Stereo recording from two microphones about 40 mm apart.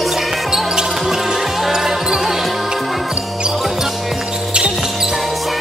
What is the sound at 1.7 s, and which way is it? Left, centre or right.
Basketball bounce, centre.